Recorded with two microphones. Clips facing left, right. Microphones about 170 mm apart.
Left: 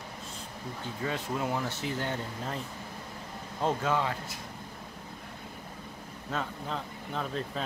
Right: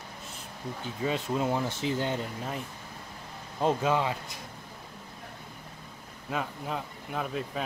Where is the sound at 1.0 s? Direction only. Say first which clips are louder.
Right 4 dB; 20° right (ahead or behind).